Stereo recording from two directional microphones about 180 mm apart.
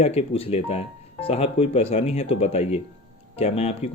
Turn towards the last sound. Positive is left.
turn(degrees=35)  # may be behind; listen again after turning